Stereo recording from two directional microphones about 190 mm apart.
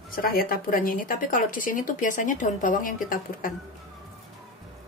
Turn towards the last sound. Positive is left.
turn(degrees=45)  # may be behind; listen again after turning